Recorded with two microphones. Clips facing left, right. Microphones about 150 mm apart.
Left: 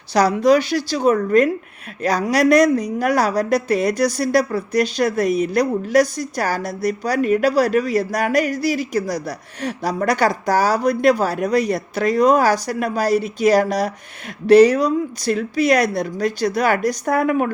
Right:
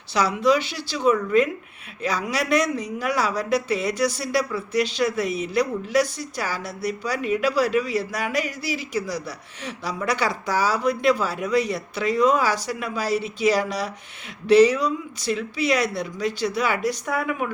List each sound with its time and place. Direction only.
0.1 s a woman's voice: 40° left (ahead or behind)